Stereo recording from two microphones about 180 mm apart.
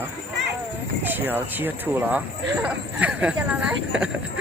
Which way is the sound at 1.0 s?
10° right (ahead or behind).